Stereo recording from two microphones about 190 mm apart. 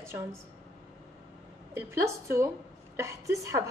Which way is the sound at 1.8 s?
15° right (ahead or behind).